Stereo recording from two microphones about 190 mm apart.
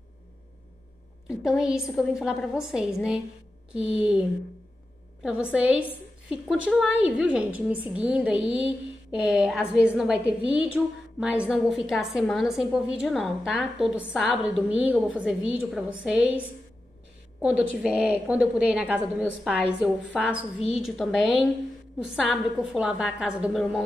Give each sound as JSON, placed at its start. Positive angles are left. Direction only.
{"t": 1.4, "sound": "a woman's voice", "side_deg": -5}
{"t": 5.2, "sound": "a woman's voice", "side_deg": -5}
{"t": 17.4, "sound": "a woman's voice", "side_deg": -5}
{"t": 20.5, "sound": "a woman's voice", "side_deg": 30}
{"t": 20.8, "sound": "a woman's voice", "side_deg": 0}